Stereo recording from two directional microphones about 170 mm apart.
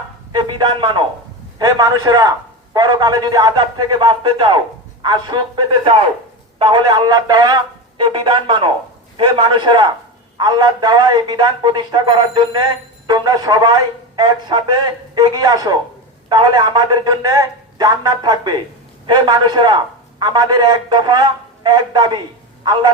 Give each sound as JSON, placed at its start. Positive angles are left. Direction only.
{"t": 0.3, "sound": "a man's voice", "side_deg": -30}